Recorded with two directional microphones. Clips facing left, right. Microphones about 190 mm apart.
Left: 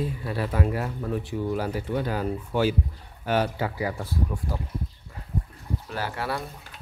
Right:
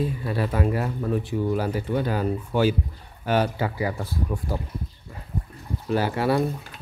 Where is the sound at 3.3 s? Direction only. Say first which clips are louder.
Right 2 dB; 25° right (ahead or behind).